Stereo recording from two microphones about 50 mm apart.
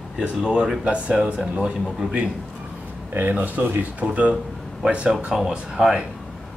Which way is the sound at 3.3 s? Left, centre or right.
Right.